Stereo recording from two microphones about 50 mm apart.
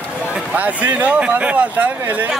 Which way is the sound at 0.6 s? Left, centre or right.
Right.